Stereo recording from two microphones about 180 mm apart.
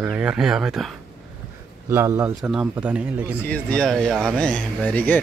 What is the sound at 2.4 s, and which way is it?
Speech, 5° right (ahead or behind).